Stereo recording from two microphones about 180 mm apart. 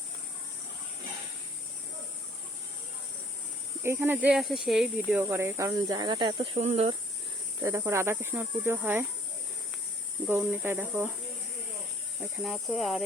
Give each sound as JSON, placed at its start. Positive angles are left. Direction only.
{"t": 3.8, "sound": "speech", "side_deg": -10}
{"t": 5.2, "sound": "speech", "side_deg": -15}
{"t": 7.6, "sound": "speech", "side_deg": -15}
{"t": 10.2, "sound": "speech", "side_deg": -10}
{"t": 12.2, "sound": "speech", "side_deg": 0}